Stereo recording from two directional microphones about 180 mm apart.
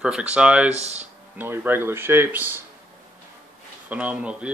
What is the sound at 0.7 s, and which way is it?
Speech, 35° right (ahead or behind).